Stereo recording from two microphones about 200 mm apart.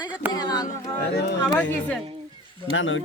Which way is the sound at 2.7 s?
70° left (ahead or behind).